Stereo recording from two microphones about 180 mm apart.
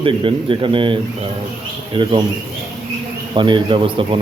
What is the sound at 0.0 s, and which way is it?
Speech, 30° right (ahead or behind).